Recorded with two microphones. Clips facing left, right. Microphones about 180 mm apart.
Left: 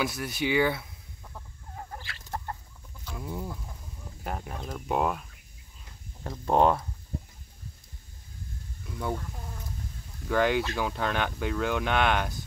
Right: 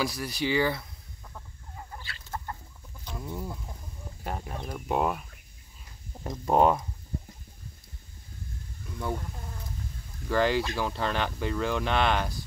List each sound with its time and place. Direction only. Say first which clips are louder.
0.0 s speech: even; centre (ahead or behind)
1.8 s chicken: left 2 dB; 50° left (ahead or behind)
3.2 s speech: left 1 dB; centre (ahead or behind)
6.2 s speech: even; 10° right (ahead or behind)
8.8 s speech: left 1 dB; 5° left (ahead or behind)
10.2 s speech: even; centre (ahead or behind)